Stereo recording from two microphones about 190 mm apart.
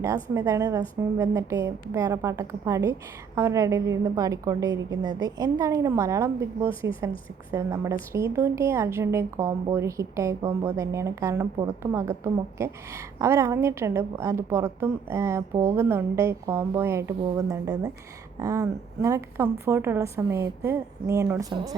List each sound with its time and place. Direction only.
0.0 s a woman's voice: 15° right (ahead or behind)